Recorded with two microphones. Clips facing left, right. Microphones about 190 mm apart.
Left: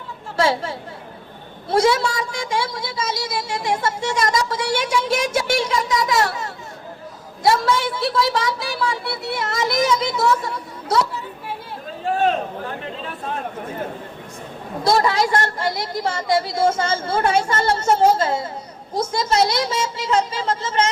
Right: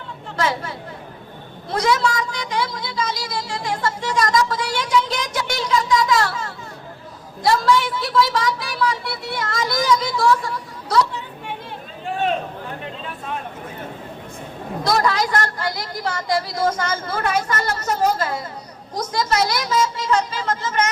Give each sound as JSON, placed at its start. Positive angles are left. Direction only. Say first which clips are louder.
{"t": 0.3, "sound": "speech", "louder": "left 3 dB", "side_deg": 30}
{"t": 1.8, "sound": "speech", "louder": "even", "side_deg": 25}
{"t": 14.8, "sound": "speech", "louder": "left 2 dB", "side_deg": 25}